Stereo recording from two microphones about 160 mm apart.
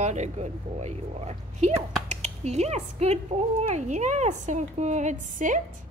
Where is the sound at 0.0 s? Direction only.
45° right (ahead or behind).